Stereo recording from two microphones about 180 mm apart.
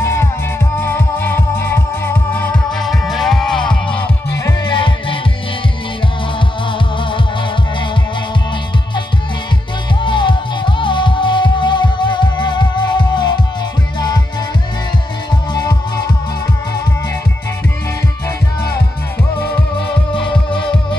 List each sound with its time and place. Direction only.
0.0 s music: 15° left (ahead or behind)
4.3 s music: 20° left (ahead or behind)
10.0 s music: 25° left (ahead or behind)